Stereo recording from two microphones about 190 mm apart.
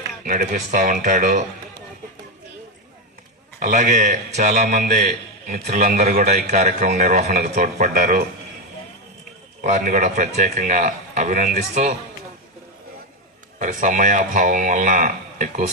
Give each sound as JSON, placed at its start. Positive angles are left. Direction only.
{"t": 0.3, "sound": "a man's voice", "side_deg": -45}
{"t": 3.6, "sound": "a man's voice", "side_deg": -40}
{"t": 9.6, "sound": "a man's voice", "side_deg": -40}
{"t": 13.6, "sound": "a man's voice", "side_deg": -40}